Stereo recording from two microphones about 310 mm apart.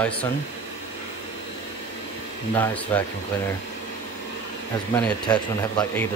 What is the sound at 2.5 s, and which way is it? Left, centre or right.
Speech, centre.